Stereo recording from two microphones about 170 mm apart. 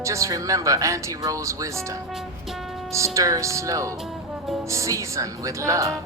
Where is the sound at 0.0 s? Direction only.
20° right (ahead or behind).